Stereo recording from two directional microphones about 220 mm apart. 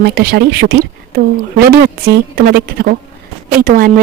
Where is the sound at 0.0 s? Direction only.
45° right (ahead or behind).